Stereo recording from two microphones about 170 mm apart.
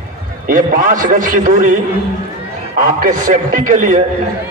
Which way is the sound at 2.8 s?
55° right (ahead or behind).